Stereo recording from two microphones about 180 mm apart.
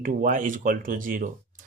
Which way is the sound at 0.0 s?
50° right (ahead or behind).